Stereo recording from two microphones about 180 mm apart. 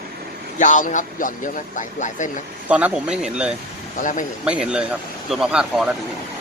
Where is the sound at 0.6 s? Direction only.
45° left (ahead or behind).